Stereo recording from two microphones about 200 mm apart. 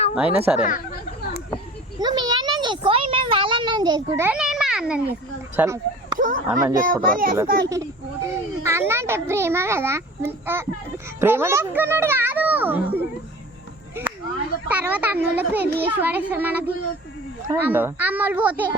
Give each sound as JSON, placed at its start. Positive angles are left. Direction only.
{"t": 0.1, "sound": "speech", "side_deg": -5}
{"t": 2.0, "sound": "a child's voice", "side_deg": -20}
{"t": 4.3, "sound": "a sound", "side_deg": -5}
{"t": 5.5, "sound": "speech", "side_deg": -15}
{"t": 6.7, "sound": "a child's voice", "side_deg": -45}
{"t": 7.7, "sound": "a child's voice", "side_deg": -15}
{"t": 14.7, "sound": "a child's voice", "side_deg": -10}